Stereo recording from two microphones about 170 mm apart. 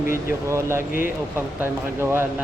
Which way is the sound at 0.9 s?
55° left (ahead or behind).